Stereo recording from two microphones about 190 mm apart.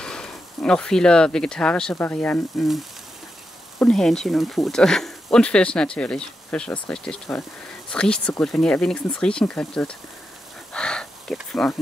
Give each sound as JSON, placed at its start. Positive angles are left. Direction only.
{"t": 0.0, "sound": "speech", "side_deg": 5}
{"t": 3.8, "sound": "speech", "side_deg": 0}
{"t": 10.7, "sound": "a sound", "side_deg": 5}